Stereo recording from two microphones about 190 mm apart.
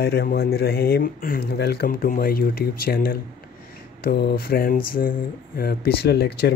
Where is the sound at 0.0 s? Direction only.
55° left (ahead or behind).